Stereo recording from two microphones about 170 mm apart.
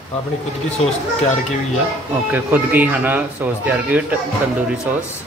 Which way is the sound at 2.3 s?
10° right (ahead or behind).